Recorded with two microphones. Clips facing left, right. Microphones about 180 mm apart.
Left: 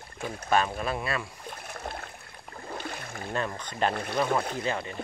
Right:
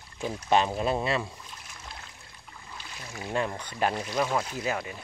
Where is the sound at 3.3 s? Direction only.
15° right (ahead or behind).